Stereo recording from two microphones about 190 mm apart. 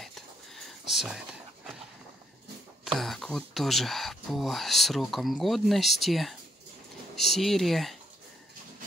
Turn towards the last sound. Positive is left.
turn(degrees=0)  # may be behind; listen again after turning